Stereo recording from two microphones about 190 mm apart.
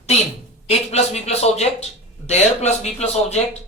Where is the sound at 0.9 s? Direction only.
35° left (ahead or behind).